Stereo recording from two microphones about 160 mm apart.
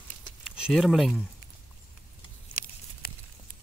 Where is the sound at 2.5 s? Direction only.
55° left (ahead or behind).